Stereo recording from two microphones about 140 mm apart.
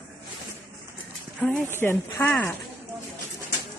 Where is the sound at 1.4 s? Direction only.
15° left (ahead or behind).